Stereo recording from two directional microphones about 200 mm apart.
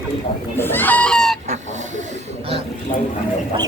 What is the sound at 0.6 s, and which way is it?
Speech, 10° left (ahead or behind).